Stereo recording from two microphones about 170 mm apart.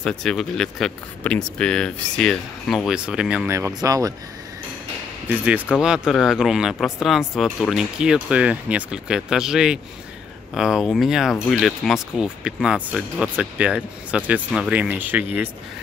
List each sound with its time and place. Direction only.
0.0 s speech: 5° left (ahead or behind)
3.5 s speech: 20° right (ahead or behind)
5.4 s speech: 5° right (ahead or behind)